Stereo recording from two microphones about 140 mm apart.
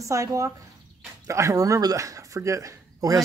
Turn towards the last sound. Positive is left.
turn(degrees=-25)  # may be behind; listen again after turning